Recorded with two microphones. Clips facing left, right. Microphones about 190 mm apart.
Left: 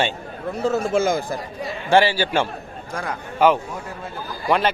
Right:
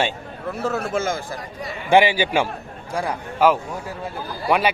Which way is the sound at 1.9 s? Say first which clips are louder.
Right 1 dB; 15° right (ahead or behind).